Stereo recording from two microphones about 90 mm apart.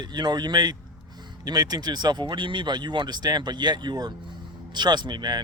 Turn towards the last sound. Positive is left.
turn(degrees=-50)  # may be behind; listen again after turning